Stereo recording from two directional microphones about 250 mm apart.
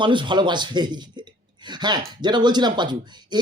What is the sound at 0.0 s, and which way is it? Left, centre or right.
A man's voice, centre.